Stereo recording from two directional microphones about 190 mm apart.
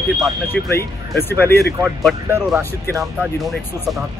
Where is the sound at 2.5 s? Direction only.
15° right (ahead or behind).